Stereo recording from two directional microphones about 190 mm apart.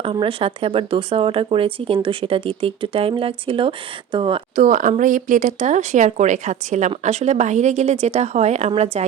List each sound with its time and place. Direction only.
0.0 s speech: 30° right (ahead or behind)
4.6 s speech: 40° right (ahead or behind)